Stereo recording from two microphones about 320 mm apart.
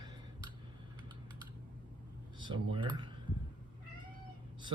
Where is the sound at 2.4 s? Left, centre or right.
Centre.